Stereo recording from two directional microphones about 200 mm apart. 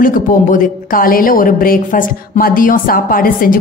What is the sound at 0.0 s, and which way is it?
A woman's voice, 40° left (ahead or behind).